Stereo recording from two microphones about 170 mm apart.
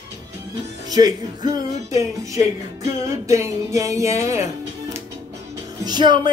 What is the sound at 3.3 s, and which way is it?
Music, 20° right (ahead or behind).